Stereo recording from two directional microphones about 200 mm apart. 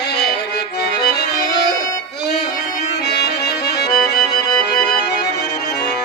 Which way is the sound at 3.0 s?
55° left (ahead or behind).